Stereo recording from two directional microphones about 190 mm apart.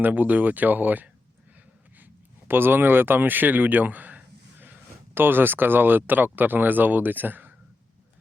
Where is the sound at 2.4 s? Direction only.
10° right (ahead or behind).